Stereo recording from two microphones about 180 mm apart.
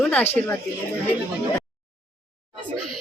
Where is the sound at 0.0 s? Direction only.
5° left (ahead or behind).